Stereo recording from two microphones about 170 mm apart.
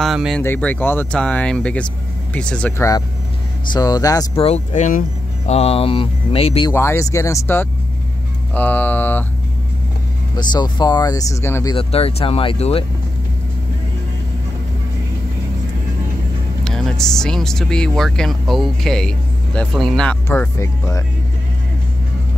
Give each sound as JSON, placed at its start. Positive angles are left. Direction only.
{"t": 0.0, "sound": "speech", "side_deg": 0}
{"t": 0.4, "sound": "speech", "side_deg": 10}
{"t": 3.7, "sound": "speech", "side_deg": 20}
{"t": 4.4, "sound": "speech", "side_deg": 40}
{"t": 6.7, "sound": "speech", "side_deg": 15}
{"t": 10.3, "sound": "speech", "side_deg": 25}
{"t": 11.7, "sound": "speech", "side_deg": 35}
{"t": 16.6, "sound": "speech", "side_deg": 5}